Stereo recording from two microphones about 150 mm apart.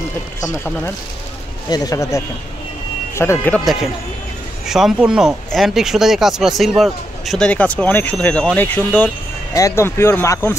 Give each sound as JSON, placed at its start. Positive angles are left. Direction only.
{"t": 0.4, "sound": "speech", "side_deg": 20}
{"t": 4.6, "sound": "speech", "side_deg": -5}